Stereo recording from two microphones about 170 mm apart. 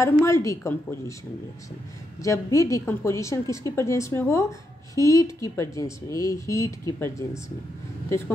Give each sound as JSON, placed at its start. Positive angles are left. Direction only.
{"t": 0.0, "sound": "a woman's voice", "side_deg": 15}
{"t": 2.2, "sound": "a woman's voice", "side_deg": 20}